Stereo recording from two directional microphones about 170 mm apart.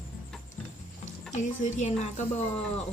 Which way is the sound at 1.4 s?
45° left (ahead or behind).